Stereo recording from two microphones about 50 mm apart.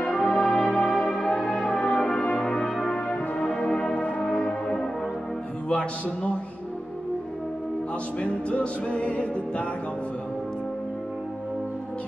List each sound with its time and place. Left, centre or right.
0.0 s music: centre
2.3 s brass instrument: centre
3.6 s music: centre
5.7 s music: left
8.2 s music: left